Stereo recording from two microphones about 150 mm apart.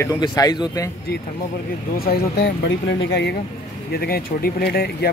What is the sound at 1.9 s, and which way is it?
Speech, 85° left.